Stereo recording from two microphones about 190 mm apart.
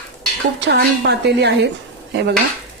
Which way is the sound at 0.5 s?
65° right (ahead or behind).